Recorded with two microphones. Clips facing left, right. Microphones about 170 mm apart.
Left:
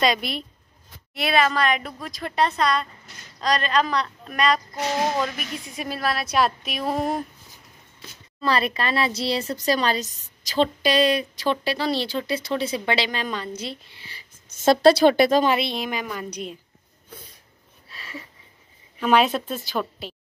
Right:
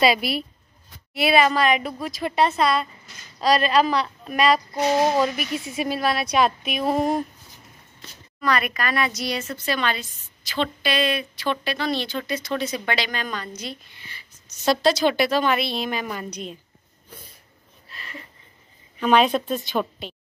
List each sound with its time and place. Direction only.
0.0 s a woman's voice: 5° right (ahead or behind)
8.4 s speech: 30° left (ahead or behind)
14.5 s a woman's voice: 50° left (ahead or behind)
15.4 s speech: 25° left (ahead or behind)
15.8 s speech: 10° left (ahead or behind)
18.9 s a woman's voice: 5° left (ahead or behind)